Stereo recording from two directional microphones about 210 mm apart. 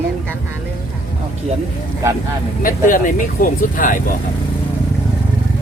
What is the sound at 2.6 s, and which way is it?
Speech, 40° left (ahead or behind).